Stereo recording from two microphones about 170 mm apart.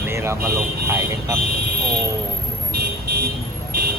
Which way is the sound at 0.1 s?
15° right (ahead or behind).